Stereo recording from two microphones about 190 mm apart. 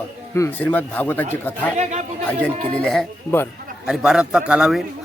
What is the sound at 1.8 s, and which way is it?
Speech, 35° right (ahead or behind).